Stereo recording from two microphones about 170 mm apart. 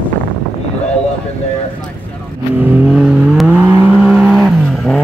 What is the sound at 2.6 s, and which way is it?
Vehicle, 10° right (ahead or behind).